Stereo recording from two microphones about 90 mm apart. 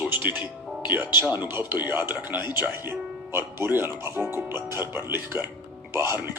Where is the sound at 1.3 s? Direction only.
25° right (ahead or behind).